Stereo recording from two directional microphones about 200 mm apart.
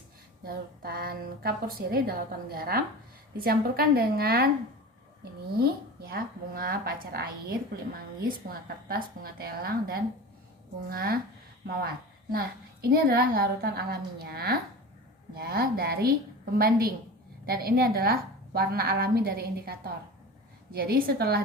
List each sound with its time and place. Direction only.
0.4 s a woman's voice: 50° right (ahead or behind)
5.5 s a woman's voice: 50° right (ahead or behind)
8.4 s a woman's voice: 50° right (ahead or behind)
12.9 s a woman's voice: 50° right (ahead or behind)